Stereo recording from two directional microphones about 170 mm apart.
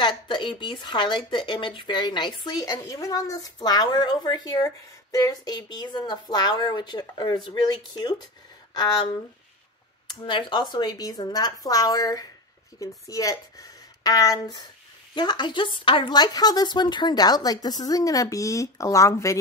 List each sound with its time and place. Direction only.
0.0 s speech: 30° left (ahead or behind)